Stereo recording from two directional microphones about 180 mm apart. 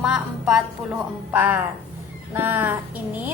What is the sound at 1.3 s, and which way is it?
A woman's voice, 10° right (ahead or behind).